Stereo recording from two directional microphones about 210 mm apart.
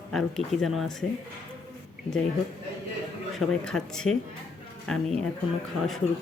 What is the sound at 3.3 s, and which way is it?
Speech, 5° left (ahead or behind).